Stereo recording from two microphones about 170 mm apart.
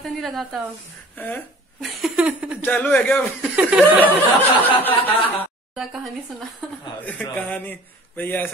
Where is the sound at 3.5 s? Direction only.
5° right (ahead or behind).